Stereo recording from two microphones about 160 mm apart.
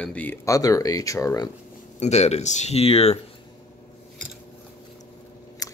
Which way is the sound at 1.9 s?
45° left (ahead or behind).